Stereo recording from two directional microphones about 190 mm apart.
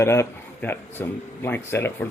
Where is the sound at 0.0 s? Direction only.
15° left (ahead or behind).